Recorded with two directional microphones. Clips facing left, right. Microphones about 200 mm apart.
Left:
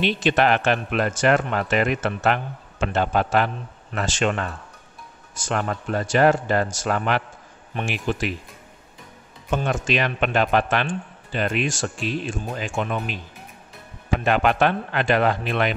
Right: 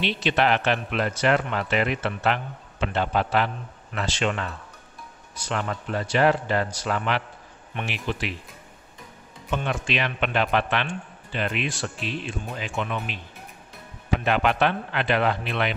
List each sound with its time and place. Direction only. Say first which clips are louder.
0.0 s speech: left 3 dB; 45° left (ahead or behind)
9.5 s speech: left 4 dB; 45° left (ahead or behind)
14.2 s speech: left 3 dB; 45° left (ahead or behind)